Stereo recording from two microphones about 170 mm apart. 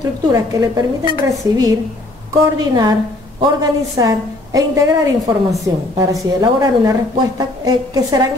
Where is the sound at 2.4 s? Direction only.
20° right (ahead or behind).